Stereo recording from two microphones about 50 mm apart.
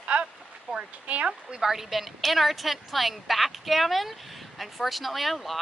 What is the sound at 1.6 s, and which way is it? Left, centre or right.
A woman's voice, centre.